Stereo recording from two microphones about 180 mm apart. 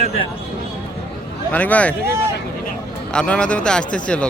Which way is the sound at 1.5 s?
10° left (ahead or behind).